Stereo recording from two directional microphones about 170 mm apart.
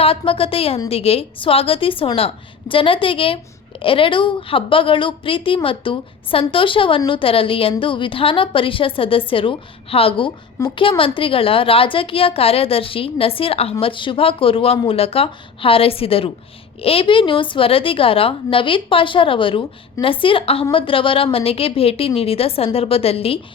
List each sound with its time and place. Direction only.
0.0 s a woman's voice: 35° left (ahead or behind)